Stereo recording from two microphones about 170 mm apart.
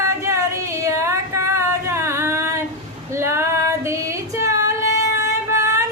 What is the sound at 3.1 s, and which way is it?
Female singing, 15° right (ahead or behind).